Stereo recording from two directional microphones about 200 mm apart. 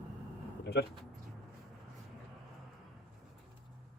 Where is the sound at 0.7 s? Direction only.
55° left (ahead or behind).